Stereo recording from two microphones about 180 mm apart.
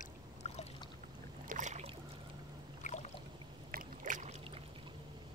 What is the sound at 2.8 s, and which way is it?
Boat, 40° left (ahead or behind).